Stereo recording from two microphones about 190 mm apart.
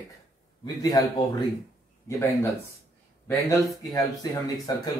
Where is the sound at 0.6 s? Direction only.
20° left (ahead or behind).